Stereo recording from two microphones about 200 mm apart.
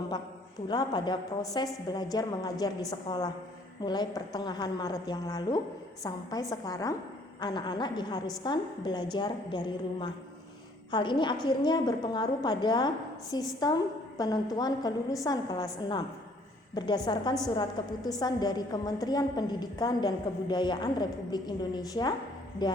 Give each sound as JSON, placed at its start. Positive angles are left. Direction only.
{"t": 0.7, "sound": "a woman's voice", "side_deg": 20}